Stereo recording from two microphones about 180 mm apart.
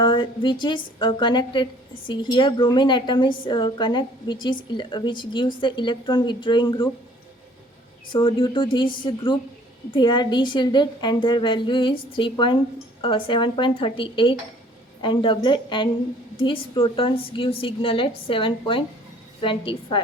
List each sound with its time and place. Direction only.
0.0 s a woman's voice: 30° left (ahead or behind)
8.1 s a woman's voice: 30° left (ahead or behind)